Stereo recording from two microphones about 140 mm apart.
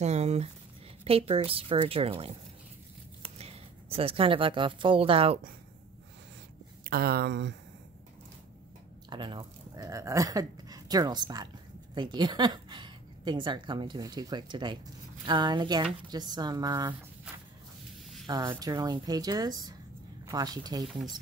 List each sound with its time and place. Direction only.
0.0 s a woman's voice: 50° right (ahead or behind)
3.3 s speech: 45° right (ahead or behind)
6.9 s speech: 90° right
9.1 s speech: 35° right (ahead or behind)
9.8 s a woman's voice: 25° right (ahead or behind)
18.2 s speech: 25° right (ahead or behind)